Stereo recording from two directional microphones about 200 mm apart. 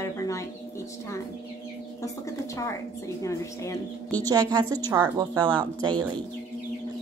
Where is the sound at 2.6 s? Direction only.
15° left (ahead or behind).